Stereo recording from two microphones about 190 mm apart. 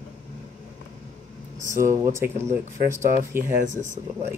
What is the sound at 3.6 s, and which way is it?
Speech, 40° right (ahead or behind).